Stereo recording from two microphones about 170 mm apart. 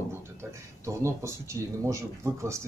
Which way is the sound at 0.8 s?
15° right (ahead or behind).